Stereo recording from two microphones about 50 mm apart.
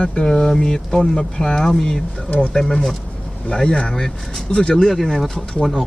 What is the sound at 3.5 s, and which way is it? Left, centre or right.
Speech, centre.